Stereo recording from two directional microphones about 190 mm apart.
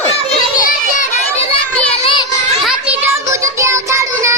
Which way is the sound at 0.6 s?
45° left (ahead or behind).